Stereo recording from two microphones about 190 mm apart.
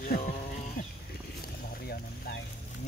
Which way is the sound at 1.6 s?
50° left (ahead or behind).